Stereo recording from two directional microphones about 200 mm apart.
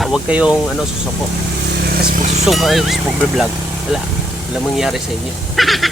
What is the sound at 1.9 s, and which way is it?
Vehicle, 50° right (ahead or behind).